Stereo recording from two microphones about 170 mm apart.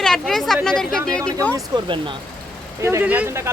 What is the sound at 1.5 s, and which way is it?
Speech, 25° right (ahead or behind).